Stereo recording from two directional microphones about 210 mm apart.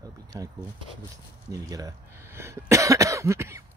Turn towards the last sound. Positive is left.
turn(degrees=-15)  # may be behind; listen again after turning